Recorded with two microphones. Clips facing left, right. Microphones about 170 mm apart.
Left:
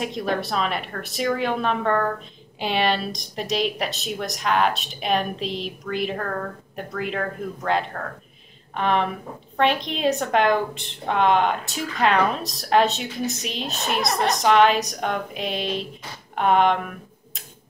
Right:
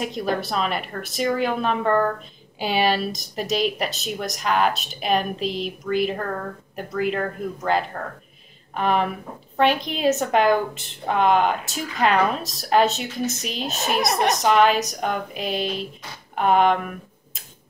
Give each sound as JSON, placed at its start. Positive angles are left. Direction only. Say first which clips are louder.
{"t": 0.0, "sound": "speech", "louder": "even", "side_deg": 0}
{"t": 14.0, "sound": "a woman's voice", "louder": "right 2 dB", "side_deg": -20}
{"t": 14.3, "sound": "speech", "louder": "left 2 dB", "side_deg": 0}